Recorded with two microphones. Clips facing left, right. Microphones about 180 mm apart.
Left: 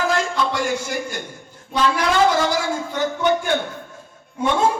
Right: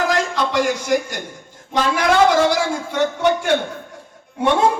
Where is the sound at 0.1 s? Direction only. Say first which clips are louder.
Right 2 dB; 70° right (ahead or behind).